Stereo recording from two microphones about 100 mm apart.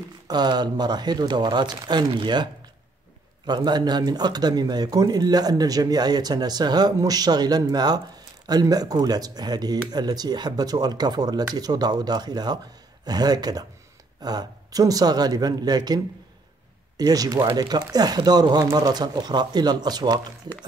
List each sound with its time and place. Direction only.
0.3 s speech: 45° right (ahead or behind)